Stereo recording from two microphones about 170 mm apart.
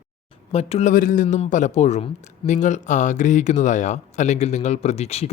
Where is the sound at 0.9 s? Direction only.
50° left (ahead or behind).